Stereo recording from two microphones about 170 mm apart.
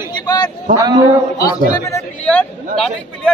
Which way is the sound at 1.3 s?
20° left (ahead or behind).